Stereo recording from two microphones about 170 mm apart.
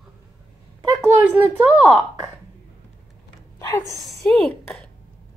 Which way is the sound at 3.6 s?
15° left (ahead or behind).